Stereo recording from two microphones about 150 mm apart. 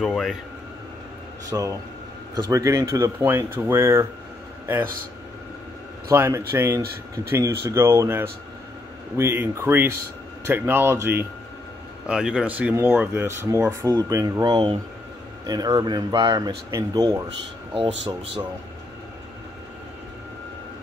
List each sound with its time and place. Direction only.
0.0 s speech: 5° left (ahead or behind)
1.5 s speech: 25° right (ahead or behind)
6.0 s speech: 20° right (ahead or behind)
17.7 s speech: 35° right (ahead or behind)